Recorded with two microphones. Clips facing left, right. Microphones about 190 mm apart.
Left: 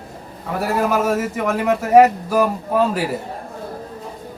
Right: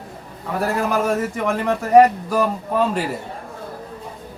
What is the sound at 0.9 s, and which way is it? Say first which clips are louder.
Speech: left 1 dB; 5° left (ahead or behind).